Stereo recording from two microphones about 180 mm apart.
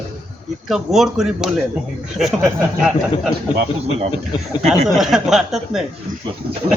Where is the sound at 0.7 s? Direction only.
Centre (ahead or behind).